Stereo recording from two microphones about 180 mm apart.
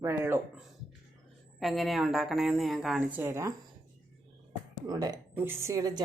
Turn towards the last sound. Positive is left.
turn(degrees=-20)  # may be behind; listen again after turning